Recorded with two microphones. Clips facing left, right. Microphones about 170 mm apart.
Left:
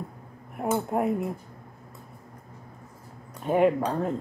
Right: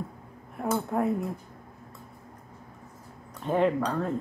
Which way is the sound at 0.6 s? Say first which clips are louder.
Left 1 dB; 20° left (ahead or behind).